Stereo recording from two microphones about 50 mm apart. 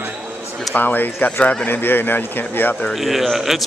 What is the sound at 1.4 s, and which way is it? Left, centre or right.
Speech, left.